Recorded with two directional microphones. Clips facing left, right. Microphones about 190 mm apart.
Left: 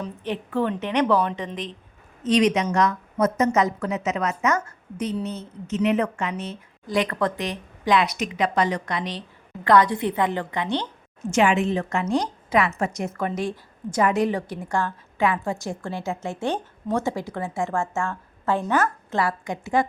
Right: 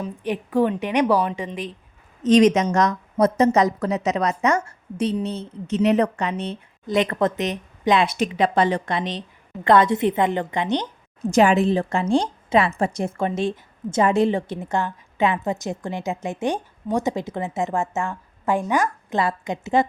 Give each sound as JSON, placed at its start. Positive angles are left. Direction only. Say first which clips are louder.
{"t": 0.0, "sound": "a woman's voice", "louder": "right 3 dB", "side_deg": -10}
{"t": 2.2, "sound": "a woman's voice", "louder": "right 5 dB", "side_deg": -45}
{"t": 11.2, "sound": "a woman's voice", "louder": "right 4 dB", "side_deg": -35}